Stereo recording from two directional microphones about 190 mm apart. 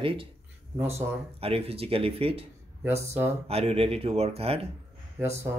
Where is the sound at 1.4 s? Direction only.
30° right (ahead or behind).